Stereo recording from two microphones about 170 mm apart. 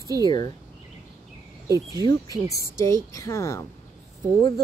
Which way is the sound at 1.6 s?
20° right (ahead or behind).